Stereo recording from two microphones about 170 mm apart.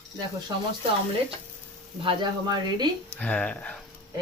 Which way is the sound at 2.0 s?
25° right (ahead or behind).